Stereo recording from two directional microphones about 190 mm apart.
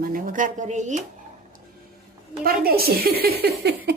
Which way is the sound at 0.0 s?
45° right (ahead or behind).